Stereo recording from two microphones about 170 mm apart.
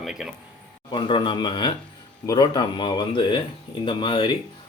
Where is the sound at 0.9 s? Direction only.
30° left (ahead or behind).